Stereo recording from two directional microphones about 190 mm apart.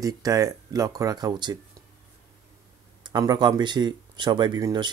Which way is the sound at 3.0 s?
20° right (ahead or behind).